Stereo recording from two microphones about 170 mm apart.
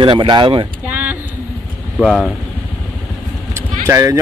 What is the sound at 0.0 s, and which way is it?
Speech, 30° right (ahead or behind).